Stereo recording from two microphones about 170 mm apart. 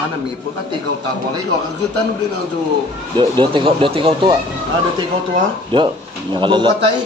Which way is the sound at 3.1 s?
30° right (ahead or behind).